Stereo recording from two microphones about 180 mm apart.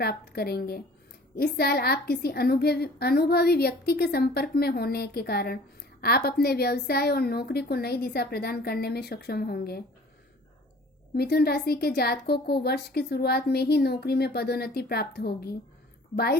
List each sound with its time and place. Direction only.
0.0 s a woman's voice: 60° left (ahead or behind)
11.1 s a woman's voice: 60° left (ahead or behind)